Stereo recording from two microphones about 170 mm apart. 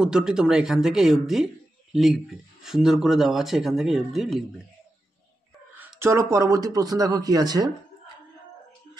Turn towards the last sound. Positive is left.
turn(degrees=-20)  # may be behind; listen again after turning